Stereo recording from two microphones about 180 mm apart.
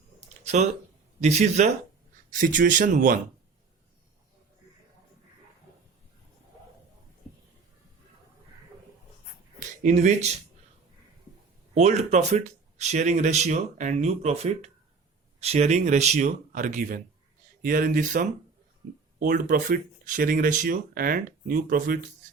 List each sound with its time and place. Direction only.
1.2 s speech: 40° right (ahead or behind)
9.6 s speech: 45° right (ahead or behind)
11.7 s speech: 40° right (ahead or behind)